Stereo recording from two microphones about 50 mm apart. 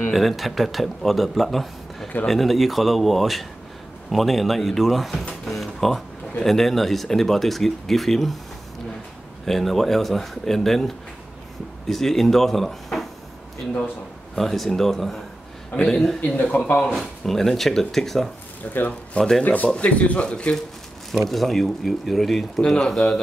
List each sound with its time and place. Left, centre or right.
0.1 s speech: centre
5.4 s music: centre
6.4 s speech: centre
9.5 s speech: centre
11.9 s speech: centre
14.3 s speech: centre
16.5 s speech: left
17.0 s speech: centre
18.6 s speech: left
21.3 s speech: centre